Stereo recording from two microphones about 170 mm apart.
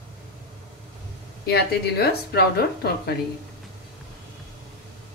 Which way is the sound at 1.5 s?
70° left (ahead or behind).